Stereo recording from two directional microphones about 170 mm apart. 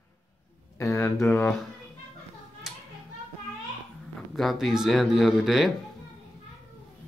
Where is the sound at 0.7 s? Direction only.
15° left (ahead or behind).